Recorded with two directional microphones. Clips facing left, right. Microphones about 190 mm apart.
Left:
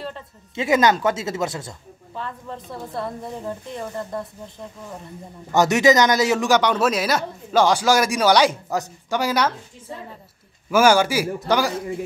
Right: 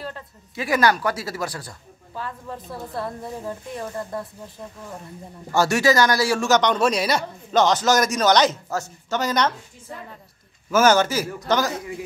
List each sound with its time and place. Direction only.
0.6 s speech: 20° left (ahead or behind)
2.1 s a woman's voice: 5° right (ahead or behind)
5.5 s a man's voice: 20° left (ahead or behind)
10.7 s a man's voice: 10° left (ahead or behind)